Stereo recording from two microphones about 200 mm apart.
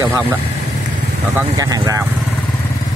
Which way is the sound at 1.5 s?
20° right (ahead or behind).